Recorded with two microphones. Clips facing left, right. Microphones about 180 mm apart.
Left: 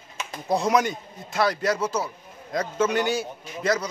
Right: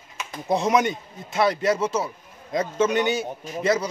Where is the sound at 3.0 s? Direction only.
20° right (ahead or behind).